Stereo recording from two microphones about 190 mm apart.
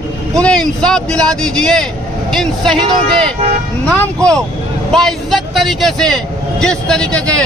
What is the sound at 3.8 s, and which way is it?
A man's voice, 5° left (ahead or behind).